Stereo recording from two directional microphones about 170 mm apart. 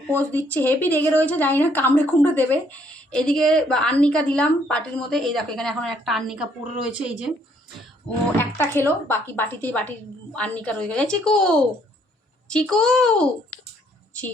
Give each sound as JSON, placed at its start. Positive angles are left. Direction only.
{"t": 0.1, "sound": "a woman's voice", "side_deg": 10}
{"t": 8.4, "sound": "a woman's voice", "side_deg": 15}